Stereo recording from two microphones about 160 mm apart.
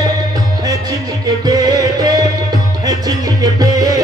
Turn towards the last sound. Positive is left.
turn(degrees=-20)  # may be behind; listen again after turning